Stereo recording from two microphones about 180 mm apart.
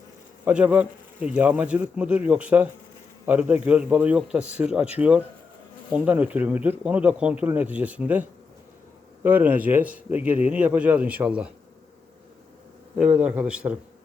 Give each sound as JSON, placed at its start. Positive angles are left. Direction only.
{"t": 0.4, "sound": "speech", "side_deg": -10}
{"t": 13.0, "sound": "speech", "side_deg": -5}